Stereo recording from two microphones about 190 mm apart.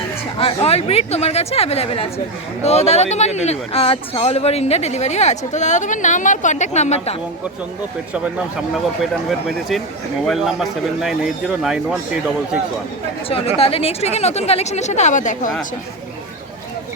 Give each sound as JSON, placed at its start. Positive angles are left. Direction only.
{"t": 0.3, "sound": "speech", "side_deg": 30}
{"t": 9.5, "sound": "a man's voice", "side_deg": 0}
{"t": 13.2, "sound": "speech", "side_deg": 30}